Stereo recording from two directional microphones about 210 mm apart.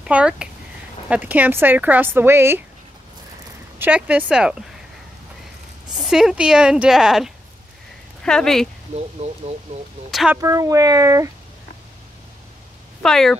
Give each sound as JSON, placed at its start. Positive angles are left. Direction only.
{"t": 0.0, "sound": "speech", "side_deg": -5}
{"t": 3.8, "sound": "a woman's voice", "side_deg": -5}
{"t": 5.9, "sound": "a woman's voice", "side_deg": 0}
{"t": 9.2, "sound": "speech", "side_deg": -30}
{"t": 10.1, "sound": "a woman's voice", "side_deg": -5}
{"t": 10.4, "sound": "speech", "side_deg": -15}
{"t": 13.0, "sound": "a woman's voice", "side_deg": 0}